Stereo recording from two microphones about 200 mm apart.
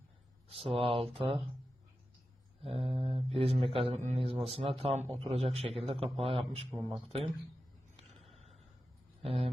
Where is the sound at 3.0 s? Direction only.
25° right (ahead or behind).